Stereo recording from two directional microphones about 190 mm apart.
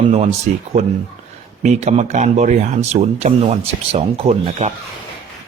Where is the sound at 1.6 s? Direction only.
35° right (ahead or behind).